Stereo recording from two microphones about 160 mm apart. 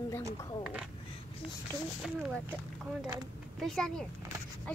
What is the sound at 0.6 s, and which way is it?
Speech, 5° right (ahead or behind).